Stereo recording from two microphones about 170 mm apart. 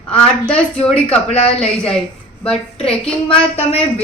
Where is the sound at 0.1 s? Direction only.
5° left (ahead or behind).